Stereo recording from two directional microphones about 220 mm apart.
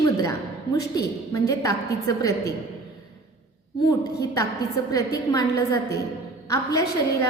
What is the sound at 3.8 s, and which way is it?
A woman's voice, 15° left (ahead or behind).